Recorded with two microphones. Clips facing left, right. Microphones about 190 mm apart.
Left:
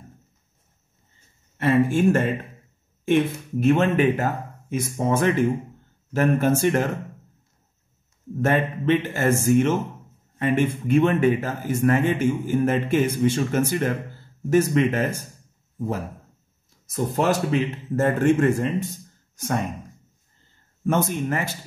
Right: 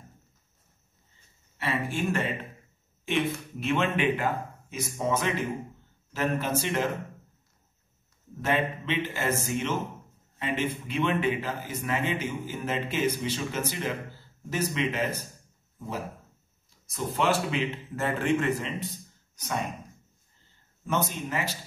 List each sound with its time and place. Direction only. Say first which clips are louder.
1.6 s a man's voice: left 11 dB; 45° left (ahead or behind)
8.4 s a man's voice: left 6 dB; 50° left (ahead or behind)
16.9 s a man's voice: left 5 dB; 45° left (ahead or behind)
20.8 s a man's voice: left 7 dB; 55° left (ahead or behind)